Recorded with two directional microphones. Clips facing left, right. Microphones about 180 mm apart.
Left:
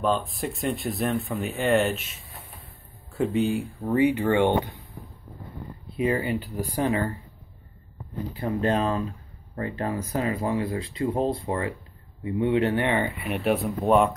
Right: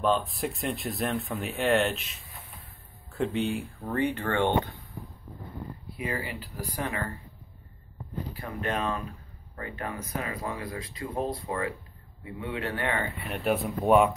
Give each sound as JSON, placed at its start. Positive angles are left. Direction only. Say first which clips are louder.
{"t": 0.0, "sound": "speech", "louder": "left 1 dB", "side_deg": 0}
{"t": 5.9, "sound": "speech", "louder": "left 10 dB", "side_deg": 25}
{"t": 8.4, "sound": "speech", "louder": "left 8 dB", "side_deg": 30}
{"t": 13.3, "sound": "speech", "louder": "left 2 dB", "side_deg": 0}